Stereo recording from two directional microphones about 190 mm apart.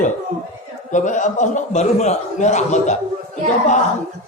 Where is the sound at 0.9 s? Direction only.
40° left (ahead or behind).